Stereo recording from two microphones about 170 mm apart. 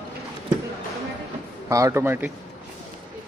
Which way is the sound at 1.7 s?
20° right (ahead or behind).